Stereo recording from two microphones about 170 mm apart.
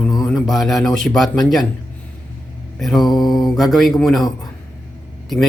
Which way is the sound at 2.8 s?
Centre (ahead or behind).